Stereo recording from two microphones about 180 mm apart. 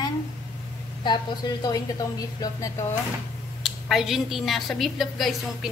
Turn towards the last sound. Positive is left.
turn(degrees=0)  # may be behind; listen again after turning